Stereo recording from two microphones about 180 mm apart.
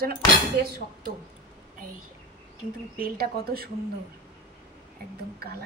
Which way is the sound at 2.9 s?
55° right (ahead or behind).